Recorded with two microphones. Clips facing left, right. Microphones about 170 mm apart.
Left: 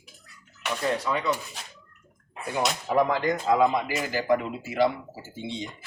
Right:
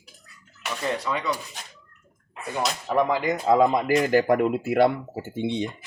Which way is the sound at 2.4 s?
5° left (ahead or behind).